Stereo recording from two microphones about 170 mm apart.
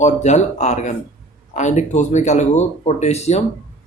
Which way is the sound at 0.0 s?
40° left (ahead or behind).